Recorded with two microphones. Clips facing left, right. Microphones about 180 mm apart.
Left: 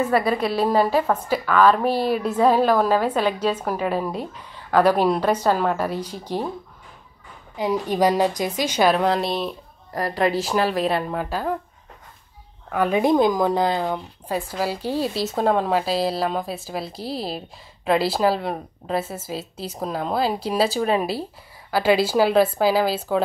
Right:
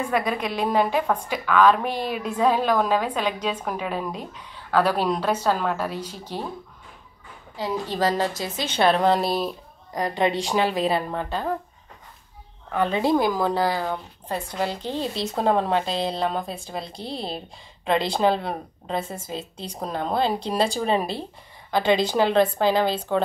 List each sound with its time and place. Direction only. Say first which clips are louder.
0.6 s a woman's voice: left 2 dB; 40° left (ahead or behind)
1.0 s a woman's voice: left 3 dB; 10° left (ahead or behind)
1.5 s speech: left 1 dB; 40° left (ahead or behind)
2.6 s a woman's voice: left 3 dB; 10° left (ahead or behind)
3.7 s speech: left 5 dB; 45° left (ahead or behind)
4.4 s a woman's voice: left 3 dB; 10° left (ahead or behind)
7.5 s a woman's voice: left 5 dB; 15° left (ahead or behind)
12.7 s a woman's voice: left 3 dB; 10° left (ahead or behind)